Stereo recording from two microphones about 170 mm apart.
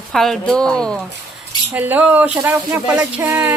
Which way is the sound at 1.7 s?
10° right (ahead or behind).